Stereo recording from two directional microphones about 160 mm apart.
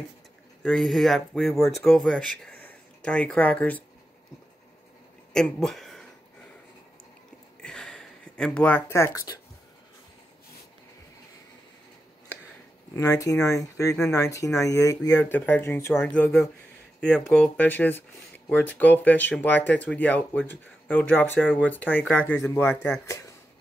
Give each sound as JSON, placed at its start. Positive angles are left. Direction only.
{"t": 0.6, "sound": "speech", "side_deg": 0}
{"t": 5.3, "sound": "speech", "side_deg": 5}
{"t": 7.6, "sound": "a sound", "side_deg": 5}
{"t": 12.9, "sound": "speech", "side_deg": 20}